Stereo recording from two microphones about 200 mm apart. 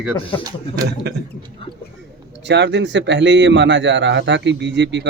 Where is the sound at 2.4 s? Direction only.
60° right (ahead or behind).